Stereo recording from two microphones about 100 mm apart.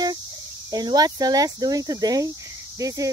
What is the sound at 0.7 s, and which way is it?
Speech, 40° right (ahead or behind).